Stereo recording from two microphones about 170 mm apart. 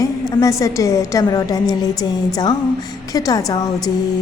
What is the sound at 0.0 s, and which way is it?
A woman's voice, 20° left (ahead or behind).